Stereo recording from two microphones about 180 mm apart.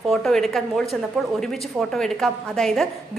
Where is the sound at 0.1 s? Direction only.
Centre (ahead or behind).